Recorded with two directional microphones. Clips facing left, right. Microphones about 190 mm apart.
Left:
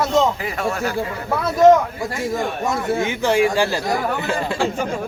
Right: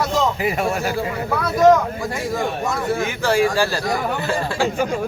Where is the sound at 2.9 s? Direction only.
20° left (ahead or behind).